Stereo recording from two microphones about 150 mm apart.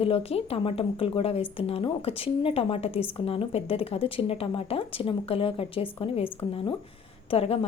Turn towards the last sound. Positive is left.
turn(degrees=40)  # may be behind; listen again after turning